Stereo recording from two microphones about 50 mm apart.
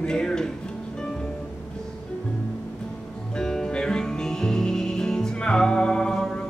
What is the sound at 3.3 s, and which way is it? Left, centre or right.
Music, centre.